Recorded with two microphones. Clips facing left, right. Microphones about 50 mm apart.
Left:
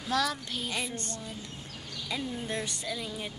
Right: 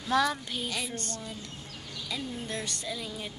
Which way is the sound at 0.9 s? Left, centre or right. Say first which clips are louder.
Right 1 dB; left.